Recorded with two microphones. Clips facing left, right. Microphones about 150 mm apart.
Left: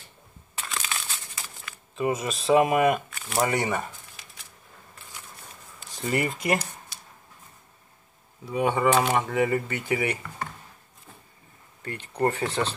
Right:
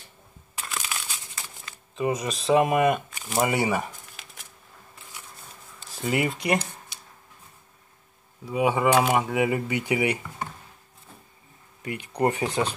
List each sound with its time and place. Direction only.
0.6 s crumpling: 5° right (ahead or behind)
2.0 s speech: centre (ahead or behind)
3.1 s shuffling cards: 20° right (ahead or behind)
3.3 s speech: 5° right (ahead or behind)
5.9 s speech: 5° right (ahead or behind)
8.5 s speech: 5° right (ahead or behind)
11.8 s speech: 15° right (ahead or behind)